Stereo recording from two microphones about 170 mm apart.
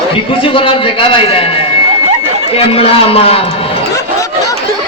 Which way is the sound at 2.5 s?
35° left (ahead or behind).